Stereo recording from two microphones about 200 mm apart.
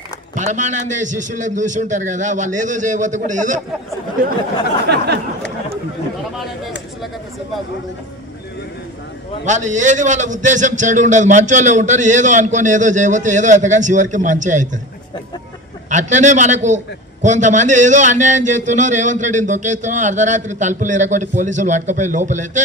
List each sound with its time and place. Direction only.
0.5 s a man's voice: 35° right (ahead or behind)
4.8 s a sound: 55° right (ahead or behind)
9.5 s a man's voice: 35° right (ahead or behind)
15.9 s a man's voice: 35° right (ahead or behind)